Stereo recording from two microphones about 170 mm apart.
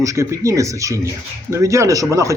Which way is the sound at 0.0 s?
15° right (ahead or behind).